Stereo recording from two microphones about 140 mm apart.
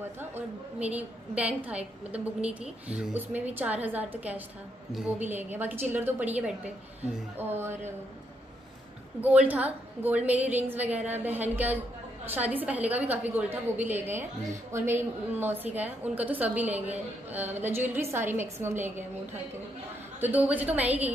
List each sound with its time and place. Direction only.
0.7 s a woman's voice: 10° right (ahead or behind)
9.2 s a woman's voice: 10° right (ahead or behind)
20.2 s a woman's voice: 10° right (ahead or behind)